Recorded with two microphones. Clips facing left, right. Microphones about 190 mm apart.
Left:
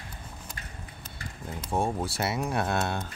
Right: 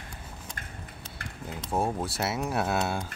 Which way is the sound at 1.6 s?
Centre (ahead or behind).